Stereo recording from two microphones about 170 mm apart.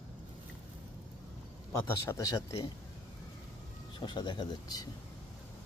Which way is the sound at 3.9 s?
25° left (ahead or behind).